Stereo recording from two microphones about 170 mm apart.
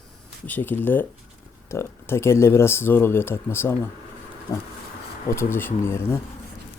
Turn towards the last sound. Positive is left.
turn(degrees=15)  # may be behind; listen again after turning